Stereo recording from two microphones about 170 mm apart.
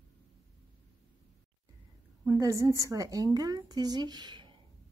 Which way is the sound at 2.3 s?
20° right (ahead or behind).